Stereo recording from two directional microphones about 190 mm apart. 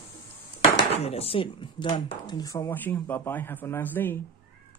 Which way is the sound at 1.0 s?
30° left (ahead or behind).